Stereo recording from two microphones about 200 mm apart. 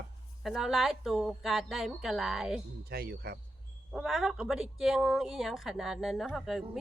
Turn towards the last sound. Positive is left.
turn(degrees=0)  # may be behind; listen again after turning